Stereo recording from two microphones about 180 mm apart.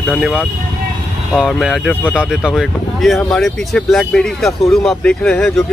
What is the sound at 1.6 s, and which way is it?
Speech, centre (ahead or behind).